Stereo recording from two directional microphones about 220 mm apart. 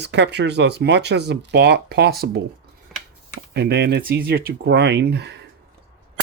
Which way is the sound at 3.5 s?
50° right (ahead or behind).